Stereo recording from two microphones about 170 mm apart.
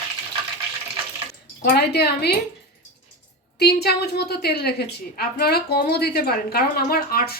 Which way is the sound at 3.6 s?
70° left (ahead or behind).